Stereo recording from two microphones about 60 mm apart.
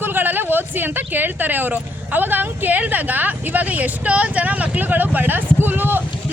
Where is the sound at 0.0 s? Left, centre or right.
Right.